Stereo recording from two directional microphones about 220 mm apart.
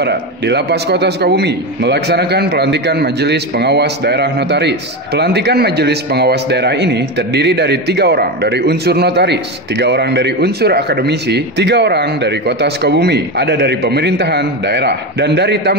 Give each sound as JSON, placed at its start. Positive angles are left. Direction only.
{"t": 0.0, "sound": "a man's voice", "side_deg": -50}